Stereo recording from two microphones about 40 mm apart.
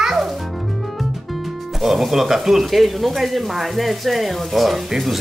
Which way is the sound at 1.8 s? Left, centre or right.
Centre.